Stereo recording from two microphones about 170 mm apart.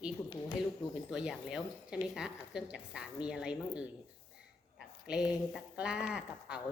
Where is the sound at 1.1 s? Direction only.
5° right (ahead or behind).